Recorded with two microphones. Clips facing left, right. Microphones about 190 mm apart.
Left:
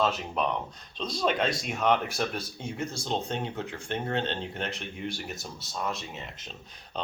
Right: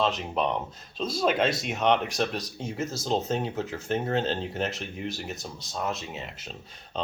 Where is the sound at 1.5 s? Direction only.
25° right (ahead or behind).